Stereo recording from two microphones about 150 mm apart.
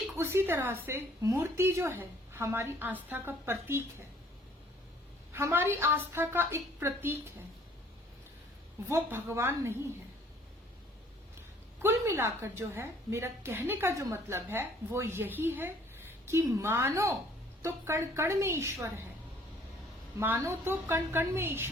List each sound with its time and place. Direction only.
0.2 s a woman's voice: 15° right (ahead or behind)
5.3 s a woman's voice: 15° right (ahead or behind)
8.9 s a woman's voice: 15° right (ahead or behind)
11.8 s a woman's voice: 15° right (ahead or behind)
20.1 s a woman's voice: 15° right (ahead or behind)